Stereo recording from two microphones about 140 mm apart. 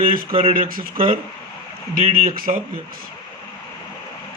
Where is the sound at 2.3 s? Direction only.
90° right.